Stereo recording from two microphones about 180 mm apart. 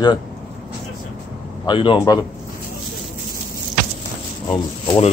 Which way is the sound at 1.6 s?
25° left (ahead or behind).